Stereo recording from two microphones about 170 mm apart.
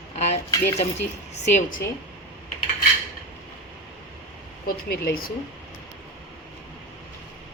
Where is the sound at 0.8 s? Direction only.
40° left (ahead or behind).